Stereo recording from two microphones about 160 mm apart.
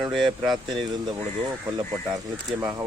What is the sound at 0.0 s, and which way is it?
Speech, centre (ahead or behind).